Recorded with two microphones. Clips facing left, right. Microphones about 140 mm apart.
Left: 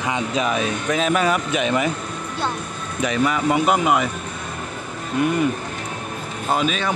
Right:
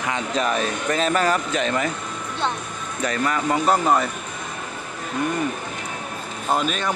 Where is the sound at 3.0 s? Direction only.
10° left (ahead or behind).